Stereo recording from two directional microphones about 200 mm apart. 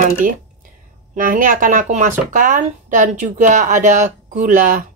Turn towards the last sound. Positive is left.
turn(degrees=-40)  # may be behind; listen again after turning